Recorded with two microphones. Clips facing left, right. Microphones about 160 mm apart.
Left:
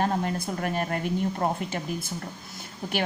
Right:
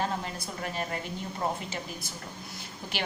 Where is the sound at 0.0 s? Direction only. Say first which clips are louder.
Left 6 dB; 50° left (ahead or behind).